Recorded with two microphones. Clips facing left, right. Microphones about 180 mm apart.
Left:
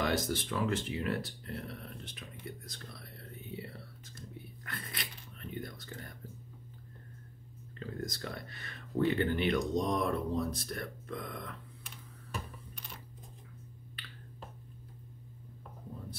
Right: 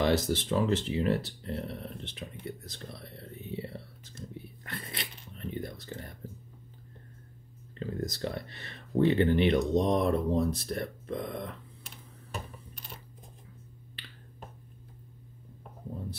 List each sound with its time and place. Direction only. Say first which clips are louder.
0.0 s speech: right 5 dB; 25° right (ahead or behind)
4.6 s a sound: right 3 dB; 25° right (ahead or behind)
5.6 s whispering: right 4 dB; 25° right (ahead or behind)
7.8 s speech: right 6 dB; 25° right (ahead or behind)